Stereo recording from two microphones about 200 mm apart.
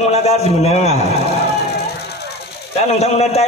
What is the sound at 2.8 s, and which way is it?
Speech, 35° left (ahead or behind).